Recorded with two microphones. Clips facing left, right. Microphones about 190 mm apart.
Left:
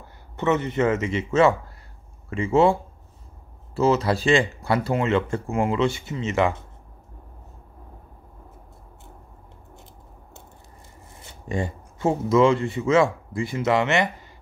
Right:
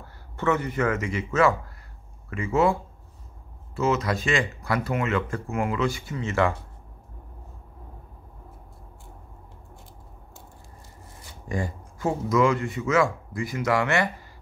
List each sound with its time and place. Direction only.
0.0 s speech: 20° left (ahead or behind)
11.1 s a man's voice: 25° left (ahead or behind)